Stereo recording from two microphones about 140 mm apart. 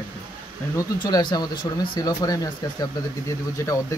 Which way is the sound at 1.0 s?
30° left (ahead or behind).